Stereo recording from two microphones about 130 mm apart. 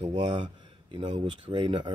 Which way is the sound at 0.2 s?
35° right (ahead or behind).